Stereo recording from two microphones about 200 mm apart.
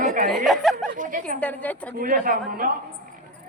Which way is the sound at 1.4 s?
10° left (ahead or behind).